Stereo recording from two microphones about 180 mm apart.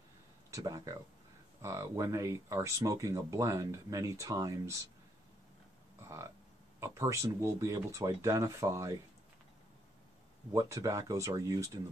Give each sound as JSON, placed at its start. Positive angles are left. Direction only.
{"t": 0.5, "sound": "speech", "side_deg": -20}
{"t": 5.9, "sound": "speech", "side_deg": -15}
{"t": 10.5, "sound": "speech", "side_deg": -20}